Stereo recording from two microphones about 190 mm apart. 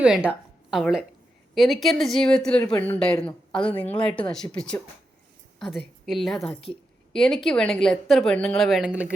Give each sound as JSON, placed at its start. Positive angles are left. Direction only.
{"t": 0.0, "sound": "a woman's voice", "side_deg": -5}